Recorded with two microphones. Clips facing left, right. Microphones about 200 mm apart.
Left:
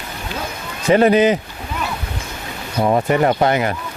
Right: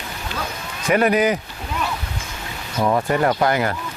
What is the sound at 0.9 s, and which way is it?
Speech, 25° left (ahead or behind).